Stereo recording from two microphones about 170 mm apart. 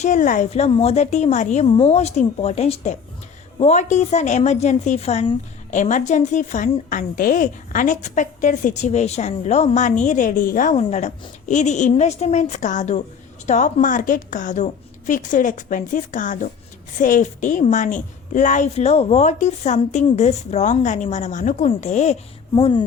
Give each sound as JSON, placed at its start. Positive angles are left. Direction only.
{"t": 0.0, "sound": "a woman's voice", "side_deg": 45}